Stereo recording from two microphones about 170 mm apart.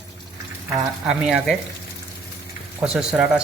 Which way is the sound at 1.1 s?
5° right (ahead or behind).